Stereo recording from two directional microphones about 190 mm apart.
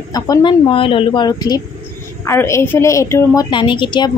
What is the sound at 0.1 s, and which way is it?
A woman's voice, 20° left (ahead or behind).